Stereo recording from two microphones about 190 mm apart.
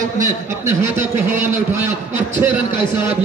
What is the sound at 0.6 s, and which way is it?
A man's voice, 10° right (ahead or behind).